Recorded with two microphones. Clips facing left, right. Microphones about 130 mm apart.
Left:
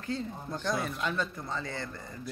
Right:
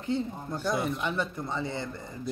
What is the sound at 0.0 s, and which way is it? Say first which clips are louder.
Speech: right 5 dB; 20° right (ahead or behind).